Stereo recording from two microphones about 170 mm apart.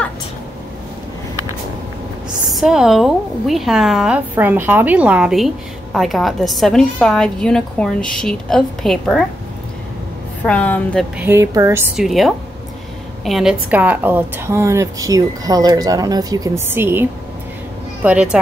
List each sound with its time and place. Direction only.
2.5 s a woman's voice: 5° right (ahead or behind)
10.4 s a woman's voice: 5° left (ahead or behind)
11.1 s a woman's voice: 15° right (ahead or behind)
12.0 s a woman's voice: centre (ahead or behind)